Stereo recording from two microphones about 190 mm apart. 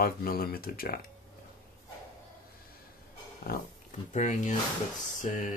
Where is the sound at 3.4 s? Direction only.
50° left (ahead or behind).